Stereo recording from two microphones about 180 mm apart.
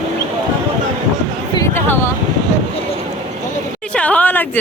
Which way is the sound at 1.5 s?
15° left (ahead or behind).